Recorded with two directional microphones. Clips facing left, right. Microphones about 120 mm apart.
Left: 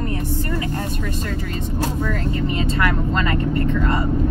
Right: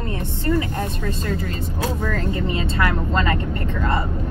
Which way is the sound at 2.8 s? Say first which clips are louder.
Right 1 dB; 30° right (ahead or behind).